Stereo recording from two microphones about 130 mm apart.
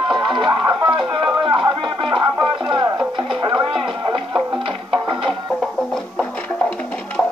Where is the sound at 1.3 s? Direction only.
40° right (ahead or behind).